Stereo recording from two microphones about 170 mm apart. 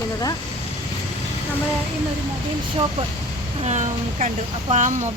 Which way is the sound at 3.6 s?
40° right (ahead or behind).